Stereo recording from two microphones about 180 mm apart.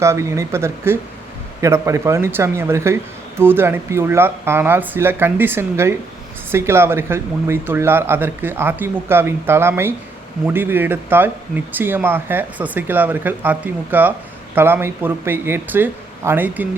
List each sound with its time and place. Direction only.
0.0 s speech: 15° right (ahead or behind)